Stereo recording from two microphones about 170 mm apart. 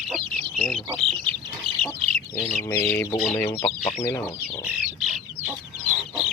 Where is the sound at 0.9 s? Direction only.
Centre (ahead or behind).